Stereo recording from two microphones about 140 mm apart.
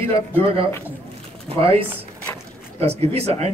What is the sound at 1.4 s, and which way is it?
Speech, 45° right (ahead or behind).